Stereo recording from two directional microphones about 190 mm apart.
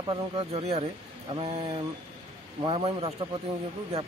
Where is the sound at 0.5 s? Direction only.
35° right (ahead or behind).